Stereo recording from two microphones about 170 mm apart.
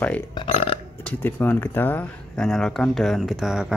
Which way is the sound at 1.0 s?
10° left (ahead or behind).